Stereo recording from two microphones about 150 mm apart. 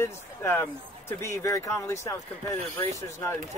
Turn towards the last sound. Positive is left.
turn(degrees=20)  # may be behind; listen again after turning